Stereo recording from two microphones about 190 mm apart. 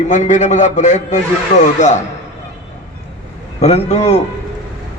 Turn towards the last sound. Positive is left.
turn(degrees=35)  # may be behind; listen again after turning